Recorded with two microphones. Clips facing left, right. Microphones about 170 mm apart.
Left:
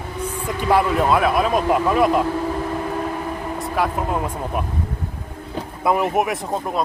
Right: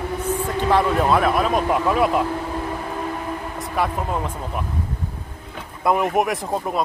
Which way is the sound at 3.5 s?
Centre (ahead or behind).